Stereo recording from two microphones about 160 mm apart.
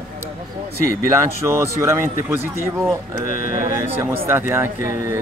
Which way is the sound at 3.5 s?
20° right (ahead or behind).